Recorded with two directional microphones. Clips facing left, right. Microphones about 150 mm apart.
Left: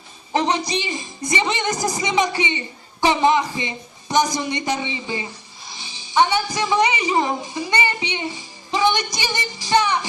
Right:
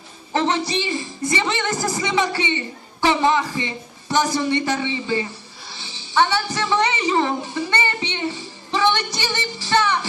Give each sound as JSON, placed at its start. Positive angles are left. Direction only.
{"t": 0.3, "sound": "speech", "side_deg": 15}